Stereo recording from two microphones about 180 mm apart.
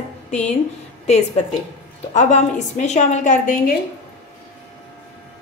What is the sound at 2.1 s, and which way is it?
A woman's voice, 40° left (ahead or behind).